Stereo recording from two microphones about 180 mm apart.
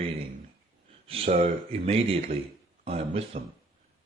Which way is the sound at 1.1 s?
35° right (ahead or behind).